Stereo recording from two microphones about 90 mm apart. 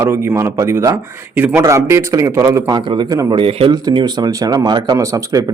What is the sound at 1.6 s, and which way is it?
A man's voice, 35° right (ahead or behind).